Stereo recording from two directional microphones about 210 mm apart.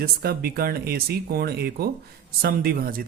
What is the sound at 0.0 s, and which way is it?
Speech, 45° right (ahead or behind).